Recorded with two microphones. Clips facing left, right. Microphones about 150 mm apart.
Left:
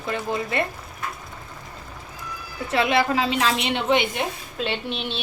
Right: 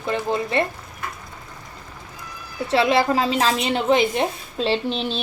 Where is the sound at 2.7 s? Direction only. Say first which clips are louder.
Right 3 dB; 35° right (ahead or behind).